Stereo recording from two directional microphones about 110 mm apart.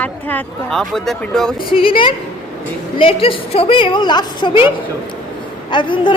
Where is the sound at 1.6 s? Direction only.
50° left (ahead or behind).